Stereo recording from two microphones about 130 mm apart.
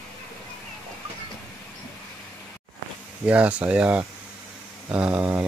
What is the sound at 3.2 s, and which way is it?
Speech, 10° right (ahead or behind).